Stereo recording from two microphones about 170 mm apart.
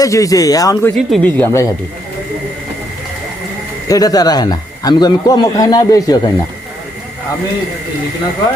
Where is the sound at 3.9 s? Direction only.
20° left (ahead or behind).